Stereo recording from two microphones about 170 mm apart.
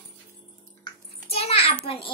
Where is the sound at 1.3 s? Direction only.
35° left (ahead or behind).